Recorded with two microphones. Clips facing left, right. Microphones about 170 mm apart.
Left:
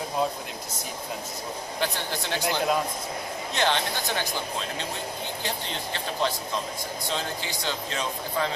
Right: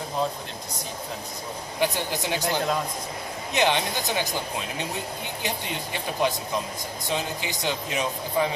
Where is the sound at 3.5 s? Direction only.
15° right (ahead or behind).